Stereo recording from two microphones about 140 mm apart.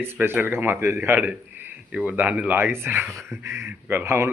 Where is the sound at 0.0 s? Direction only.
15° right (ahead or behind).